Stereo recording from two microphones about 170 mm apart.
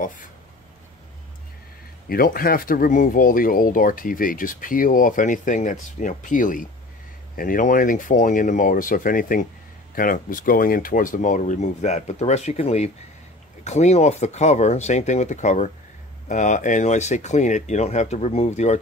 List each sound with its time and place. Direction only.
2.0 s speech: 55° left (ahead or behind); by 18.8 s 40° left (ahead or behind)